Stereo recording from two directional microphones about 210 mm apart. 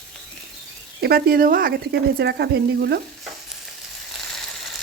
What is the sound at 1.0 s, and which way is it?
Frying, 45° right (ahead or behind).